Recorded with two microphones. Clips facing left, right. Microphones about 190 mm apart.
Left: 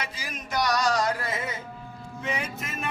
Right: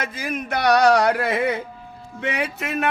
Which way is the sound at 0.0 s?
55° right (ahead or behind).